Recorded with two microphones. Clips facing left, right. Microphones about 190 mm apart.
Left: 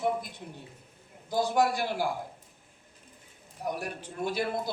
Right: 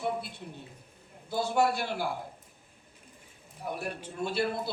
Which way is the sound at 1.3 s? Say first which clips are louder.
Left 1 dB; 15° left (ahead or behind).